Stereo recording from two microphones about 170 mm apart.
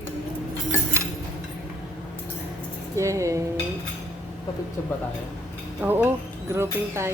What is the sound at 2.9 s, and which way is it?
Speech, 20° right (ahead or behind).